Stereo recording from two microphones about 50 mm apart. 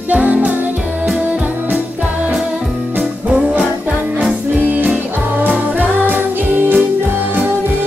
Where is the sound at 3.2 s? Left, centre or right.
Centre.